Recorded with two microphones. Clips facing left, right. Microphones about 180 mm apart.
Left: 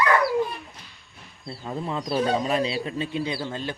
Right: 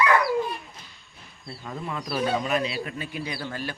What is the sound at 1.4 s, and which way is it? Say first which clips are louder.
Speech: left 4 dB; 30° left (ahead or behind).